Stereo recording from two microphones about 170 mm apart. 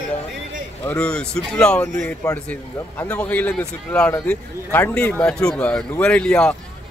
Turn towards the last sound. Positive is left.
turn(degrees=5)  # may be behind; listen again after turning